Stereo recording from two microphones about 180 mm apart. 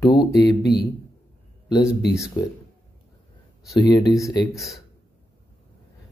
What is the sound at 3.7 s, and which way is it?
Speech, 20° left (ahead or behind).